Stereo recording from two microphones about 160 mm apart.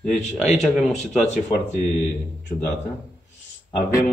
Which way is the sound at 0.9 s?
45° left (ahead or behind).